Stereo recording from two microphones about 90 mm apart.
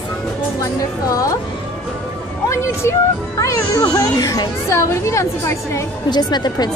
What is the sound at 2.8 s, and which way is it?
Speech, 30° left (ahead or behind).